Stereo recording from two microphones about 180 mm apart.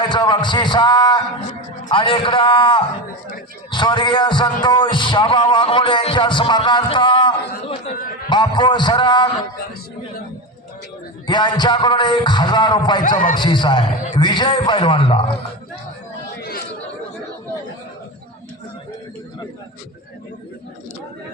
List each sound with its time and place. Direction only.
0.0 s a man's voice: 25° left (ahead or behind)
11.3 s a man's voice: 25° left (ahead or behind)
13.0 s speech: 50° left (ahead or behind)
13.3 s a man's voice: 25° left (ahead or behind)
16.4 s chatter: 60° left (ahead or behind)